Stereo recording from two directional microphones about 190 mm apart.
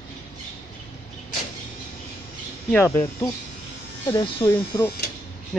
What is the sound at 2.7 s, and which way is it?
Speech, 10° left (ahead or behind).